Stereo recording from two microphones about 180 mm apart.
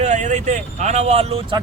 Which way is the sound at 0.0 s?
40° right (ahead or behind).